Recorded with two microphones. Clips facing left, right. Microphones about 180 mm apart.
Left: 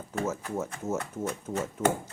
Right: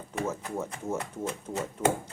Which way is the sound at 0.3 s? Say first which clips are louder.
Left 1 dB; 5° left (ahead or behind).